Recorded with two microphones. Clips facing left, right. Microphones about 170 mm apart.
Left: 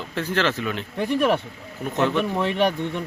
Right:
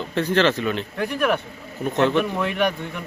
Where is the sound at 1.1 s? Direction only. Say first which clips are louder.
Left 2 dB; 30° left (ahead or behind).